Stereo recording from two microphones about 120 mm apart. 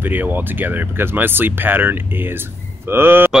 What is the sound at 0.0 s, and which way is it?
Speech, 15° right (ahead or behind).